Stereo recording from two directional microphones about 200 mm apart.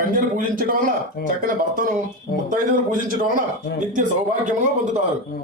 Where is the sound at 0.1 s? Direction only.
45° right (ahead or behind).